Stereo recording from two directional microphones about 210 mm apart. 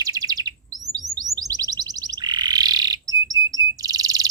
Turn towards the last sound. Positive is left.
turn(degrees=-15)  # may be behind; listen again after turning